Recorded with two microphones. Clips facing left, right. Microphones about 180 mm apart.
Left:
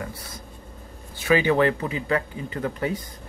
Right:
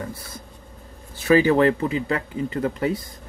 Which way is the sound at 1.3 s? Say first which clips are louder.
Right 3 dB; 35° right (ahead or behind).